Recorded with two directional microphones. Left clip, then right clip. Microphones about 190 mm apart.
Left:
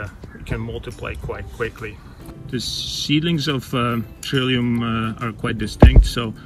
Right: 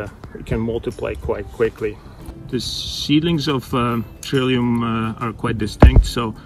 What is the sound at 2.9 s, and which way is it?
Speech, 25° right (ahead or behind).